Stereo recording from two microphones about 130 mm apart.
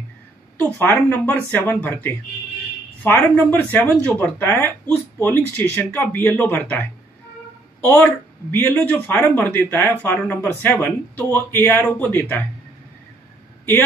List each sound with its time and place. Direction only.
0.6 s speech: 15° left (ahead or behind)